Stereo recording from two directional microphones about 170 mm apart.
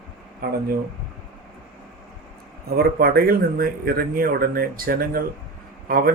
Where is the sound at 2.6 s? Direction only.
65° right (ahead or behind).